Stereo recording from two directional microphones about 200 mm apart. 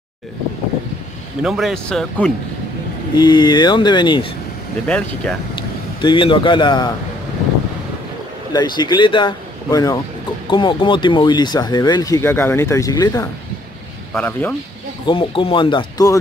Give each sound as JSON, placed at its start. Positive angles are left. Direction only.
{"t": 1.4, "sound": "speech", "side_deg": 0}
{"t": 3.2, "sound": "speech", "side_deg": 20}
{"t": 4.8, "sound": "speech", "side_deg": 5}
{"t": 5.9, "sound": "speech", "side_deg": 25}
{"t": 8.5, "sound": "speech", "side_deg": 20}
{"t": 15.0, "sound": "speech", "side_deg": 25}